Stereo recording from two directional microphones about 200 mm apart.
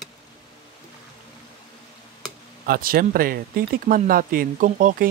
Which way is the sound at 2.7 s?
45° right (ahead or behind).